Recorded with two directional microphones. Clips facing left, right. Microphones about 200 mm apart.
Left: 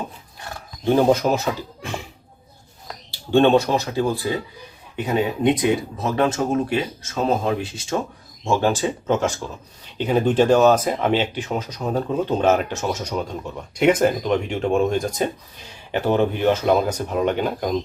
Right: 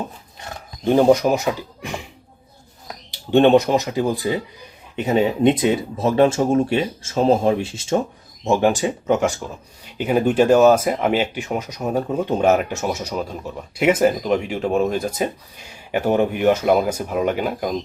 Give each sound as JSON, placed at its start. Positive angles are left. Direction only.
{"t": 0.3, "sound": "speech", "side_deg": -20}